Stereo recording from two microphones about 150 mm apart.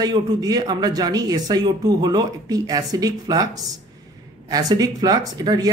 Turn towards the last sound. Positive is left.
turn(degrees=-25)  # may be behind; listen again after turning